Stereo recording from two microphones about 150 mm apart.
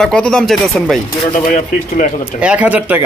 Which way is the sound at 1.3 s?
55° left (ahead or behind).